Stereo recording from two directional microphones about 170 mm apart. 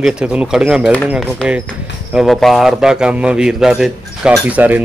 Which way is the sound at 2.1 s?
Centre (ahead or behind).